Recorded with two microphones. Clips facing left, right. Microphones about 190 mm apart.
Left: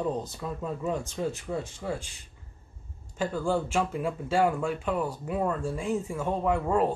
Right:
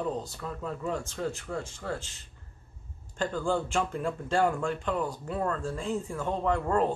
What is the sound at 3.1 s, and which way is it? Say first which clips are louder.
Speech: left 1 dB; 5° left (ahead or behind).